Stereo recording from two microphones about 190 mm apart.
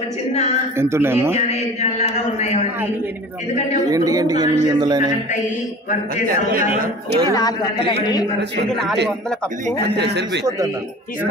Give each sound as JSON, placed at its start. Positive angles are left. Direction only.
{"t": 0.7, "sound": "speech", "side_deg": -15}
{"t": 1.5, "sound": "chant", "side_deg": 35}
{"t": 3.9, "sound": "a man's voice", "side_deg": -20}
{"t": 6.7, "sound": "speech", "side_deg": -50}
{"t": 7.3, "sound": "a man's voice", "side_deg": 25}
{"t": 8.6, "sound": "a man's voice", "side_deg": 5}
{"t": 9.9, "sound": "a man's voice", "side_deg": -65}